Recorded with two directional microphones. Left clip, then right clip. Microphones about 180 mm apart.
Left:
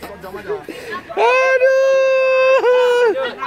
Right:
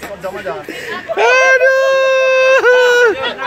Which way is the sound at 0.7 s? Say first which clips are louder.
Right 6 dB; 15° left (ahead or behind).